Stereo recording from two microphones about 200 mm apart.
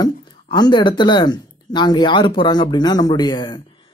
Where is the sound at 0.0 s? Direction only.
20° left (ahead or behind).